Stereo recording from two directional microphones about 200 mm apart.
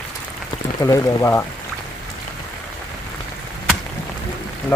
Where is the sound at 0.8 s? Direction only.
15° left (ahead or behind).